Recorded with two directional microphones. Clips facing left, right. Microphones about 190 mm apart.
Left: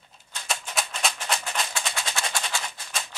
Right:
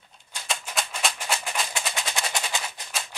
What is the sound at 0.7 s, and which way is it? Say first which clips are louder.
Music: even; centre (ahead or behind).